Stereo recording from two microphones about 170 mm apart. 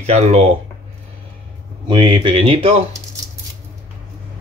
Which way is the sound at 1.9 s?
25° right (ahead or behind).